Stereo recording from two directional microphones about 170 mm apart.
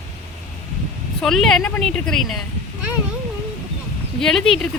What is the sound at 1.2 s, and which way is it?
Speech, centre (ahead or behind).